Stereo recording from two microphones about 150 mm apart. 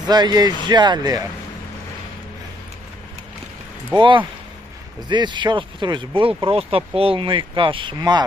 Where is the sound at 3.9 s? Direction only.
35° right (ahead or behind).